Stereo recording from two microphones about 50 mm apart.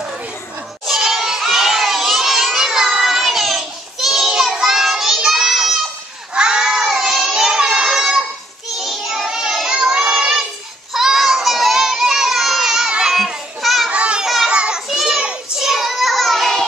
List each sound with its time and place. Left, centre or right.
0.8 s crowd: centre
6.3 s child singing: centre
10.9 s a sound: centre
13.1 s children playing: centre
13.8 s children playing: right
14.2 s a sound: centre
14.5 s children playing: right
15.0 s child singing: centre
15.6 s child singing: centre